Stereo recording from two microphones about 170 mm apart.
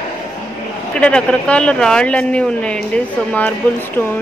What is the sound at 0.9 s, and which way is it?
Speech, 5° left (ahead or behind).